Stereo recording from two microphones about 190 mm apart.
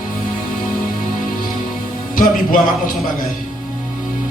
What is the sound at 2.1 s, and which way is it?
Speech, 45° left (ahead or behind).